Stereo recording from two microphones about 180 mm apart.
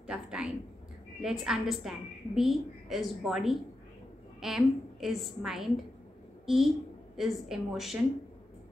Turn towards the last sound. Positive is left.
turn(degrees=0)  # may be behind; listen again after turning